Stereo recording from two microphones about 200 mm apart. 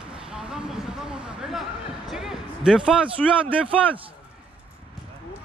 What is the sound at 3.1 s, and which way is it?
Speech, 25° right (ahead or behind).